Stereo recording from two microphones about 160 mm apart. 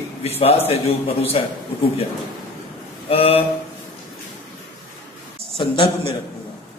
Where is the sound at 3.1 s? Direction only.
40° left (ahead or behind).